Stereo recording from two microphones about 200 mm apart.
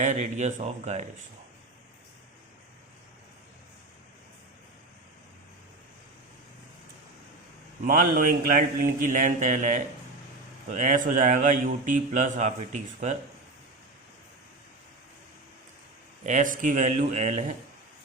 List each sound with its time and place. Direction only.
0.0 s speech: 35° right (ahead or behind)
7.9 s speech: 45° right (ahead or behind)
16.2 s speech: 40° right (ahead or behind)